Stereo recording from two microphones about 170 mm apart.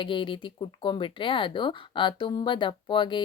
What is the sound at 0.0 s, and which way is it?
Speech, 30° left (ahead or behind).